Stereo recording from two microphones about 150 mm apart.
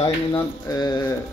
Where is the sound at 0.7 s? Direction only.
25° left (ahead or behind).